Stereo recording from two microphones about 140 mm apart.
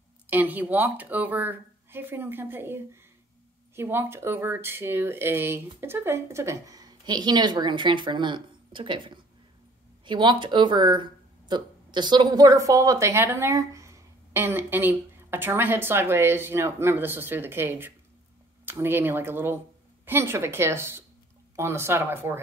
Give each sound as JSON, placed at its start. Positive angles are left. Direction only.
{"t": 0.3, "sound": "speech", "side_deg": -10}